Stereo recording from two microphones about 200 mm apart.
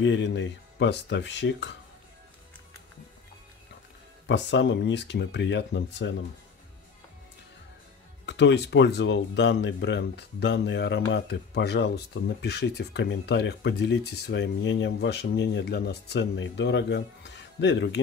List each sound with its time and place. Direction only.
0.0 s speech: 65° left (ahead or behind)
4.3 s speech: 60° left (ahead or behind)
8.3 s speech: 60° left (ahead or behind)